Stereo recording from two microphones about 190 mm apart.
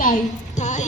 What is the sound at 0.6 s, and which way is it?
Music, 40° left (ahead or behind).